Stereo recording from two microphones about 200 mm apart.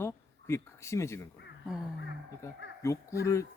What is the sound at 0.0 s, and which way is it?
Speech, 15° left (ahead or behind).